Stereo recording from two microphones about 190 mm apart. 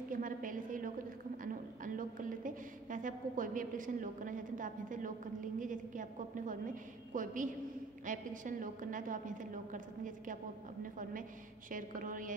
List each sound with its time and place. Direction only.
0.1 s a woman's voice: 45° right (ahead or behind)